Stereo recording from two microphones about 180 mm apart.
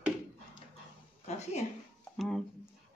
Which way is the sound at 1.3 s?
35° left (ahead or behind).